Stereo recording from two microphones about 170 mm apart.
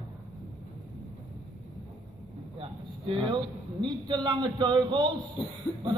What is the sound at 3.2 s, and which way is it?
A man's voice, 25° right (ahead or behind).